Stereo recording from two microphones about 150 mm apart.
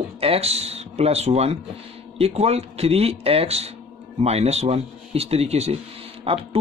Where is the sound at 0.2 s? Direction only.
40° right (ahead or behind).